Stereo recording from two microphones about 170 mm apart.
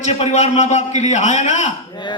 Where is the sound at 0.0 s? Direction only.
40° left (ahead or behind).